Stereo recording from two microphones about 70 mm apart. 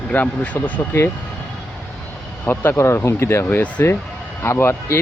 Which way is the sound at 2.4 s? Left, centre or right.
Left.